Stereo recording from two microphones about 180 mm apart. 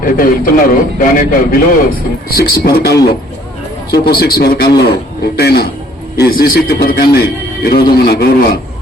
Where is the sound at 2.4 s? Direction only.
60° left (ahead or behind).